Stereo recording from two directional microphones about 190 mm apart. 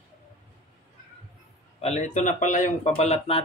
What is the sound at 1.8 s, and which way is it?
Speech, 35° left (ahead or behind).